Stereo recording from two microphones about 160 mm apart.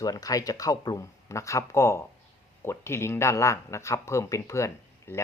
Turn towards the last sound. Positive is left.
turn(degrees=20)  # may be behind; listen again after turning